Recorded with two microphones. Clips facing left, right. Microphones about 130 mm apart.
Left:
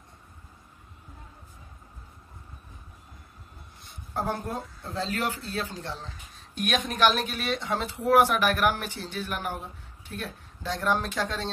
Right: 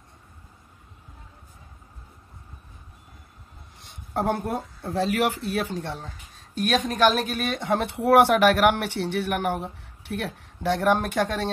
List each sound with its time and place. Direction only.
3.8 s speech: 65° right (ahead or behind)